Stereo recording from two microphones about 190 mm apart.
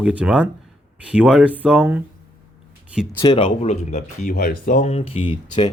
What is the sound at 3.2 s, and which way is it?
Speech, 30° left (ahead or behind).